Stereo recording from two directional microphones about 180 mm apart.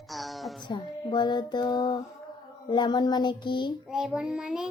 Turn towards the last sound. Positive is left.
turn(degrees=-5)  # may be behind; listen again after turning